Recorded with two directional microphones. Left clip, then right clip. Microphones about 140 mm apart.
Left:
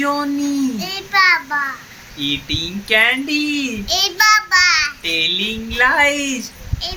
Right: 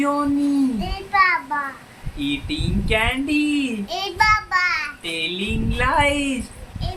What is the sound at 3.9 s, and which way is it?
A child's voice, 20° right (ahead or behind).